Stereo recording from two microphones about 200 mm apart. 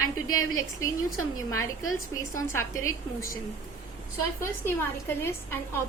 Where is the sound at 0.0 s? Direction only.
90° left.